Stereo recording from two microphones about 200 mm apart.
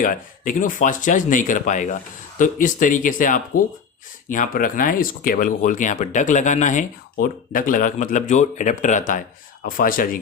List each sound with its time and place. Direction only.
0.0 s speech: 40° left (ahead or behind)